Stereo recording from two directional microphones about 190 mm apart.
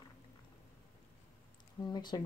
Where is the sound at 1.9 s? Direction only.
20° left (ahead or behind).